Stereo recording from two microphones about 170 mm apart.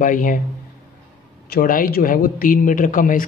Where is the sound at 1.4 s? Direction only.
60° left (ahead or behind).